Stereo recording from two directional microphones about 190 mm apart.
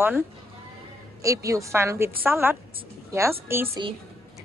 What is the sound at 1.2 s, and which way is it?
A woman's voice, 15° right (ahead or behind).